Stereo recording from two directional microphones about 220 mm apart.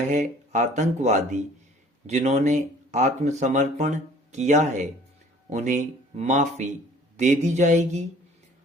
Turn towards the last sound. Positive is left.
turn(degrees=-35)  # may be behind; listen again after turning